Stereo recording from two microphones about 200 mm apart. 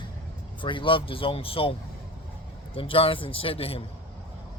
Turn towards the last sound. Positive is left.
turn(degrees=30)  # may be behind; listen again after turning